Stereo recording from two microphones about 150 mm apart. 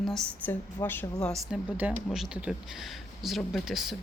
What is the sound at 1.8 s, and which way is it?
Speech, 5° right (ahead or behind).